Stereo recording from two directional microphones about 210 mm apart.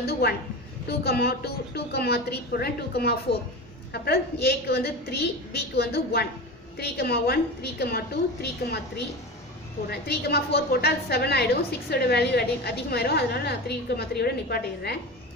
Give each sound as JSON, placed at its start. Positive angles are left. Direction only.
{"t": 0.2, "sound": "a woman's voice", "side_deg": 50}